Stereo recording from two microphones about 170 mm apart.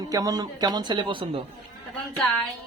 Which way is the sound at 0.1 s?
20° right (ahead or behind).